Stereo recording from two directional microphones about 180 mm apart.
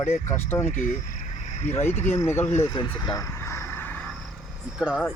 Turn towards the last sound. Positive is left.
turn(degrees=-5)  # may be behind; listen again after turning